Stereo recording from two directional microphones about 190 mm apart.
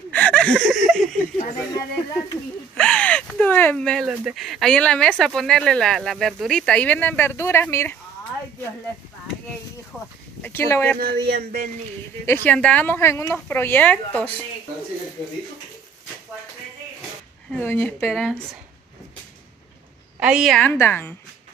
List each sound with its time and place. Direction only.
0.1 s a sound: 5° left (ahead or behind)
2.7 s speech: 5° left (ahead or behind)
9.9 s speech: centre (ahead or behind)
10.4 s speech: 10° left (ahead or behind)
11.0 s speech: 55° right (ahead or behind)
12.3 s speech: 10° left (ahead or behind)
17.5 s speech: 10° left (ahead or behind)
18.0 s speech: centre (ahead or behind)
20.2 s a woman's voice: 5° right (ahead or behind)
20.5 s speech: 10° left (ahead or behind)